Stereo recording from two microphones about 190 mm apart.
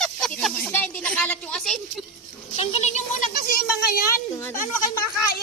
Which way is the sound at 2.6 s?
35° left (ahead or behind).